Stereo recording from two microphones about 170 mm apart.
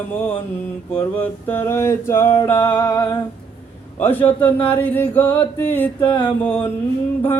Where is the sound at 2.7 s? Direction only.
25° left (ahead or behind).